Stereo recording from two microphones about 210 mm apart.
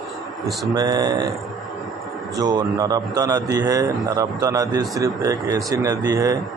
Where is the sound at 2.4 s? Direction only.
20° right (ahead or behind).